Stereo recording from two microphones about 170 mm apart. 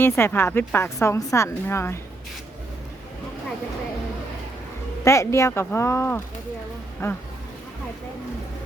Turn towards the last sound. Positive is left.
turn(degrees=15)  # may be behind; listen again after turning